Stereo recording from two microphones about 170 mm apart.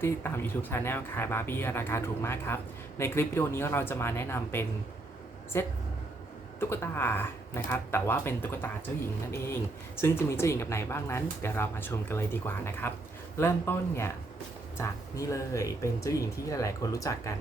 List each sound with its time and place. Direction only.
0.0 s speech: 15° left (ahead or behind)
10.0 s speech: 15° left (ahead or behind)